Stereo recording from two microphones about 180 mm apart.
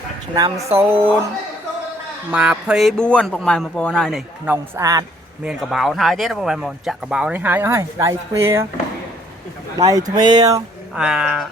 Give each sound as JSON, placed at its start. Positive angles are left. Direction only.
{"t": 0.3, "sound": "speech", "side_deg": -20}
{"t": 2.3, "sound": "speech", "side_deg": -5}
{"t": 4.4, "sound": "speech", "side_deg": -10}
{"t": 5.4, "sound": "speech", "side_deg": 0}
{"t": 10.2, "sound": "speech", "side_deg": -25}
{"t": 10.9, "sound": "speech", "side_deg": -5}